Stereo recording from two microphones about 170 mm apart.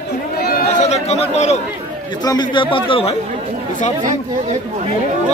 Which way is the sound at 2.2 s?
25° left (ahead or behind).